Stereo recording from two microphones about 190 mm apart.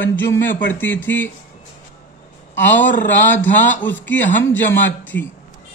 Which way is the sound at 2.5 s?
10° left (ahead or behind).